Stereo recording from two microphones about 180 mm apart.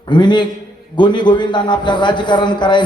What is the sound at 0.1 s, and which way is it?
A man's voice, 25° left (ahead or behind).